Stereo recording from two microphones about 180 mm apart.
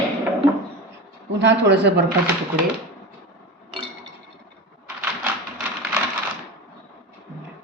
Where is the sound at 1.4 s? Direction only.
70° right (ahead or behind).